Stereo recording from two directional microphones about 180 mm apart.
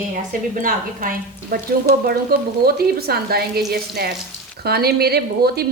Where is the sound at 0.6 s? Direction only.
50° right (ahead or behind).